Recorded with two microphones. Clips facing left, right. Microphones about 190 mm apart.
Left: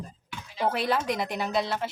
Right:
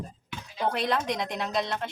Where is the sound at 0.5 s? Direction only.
5° left (ahead or behind).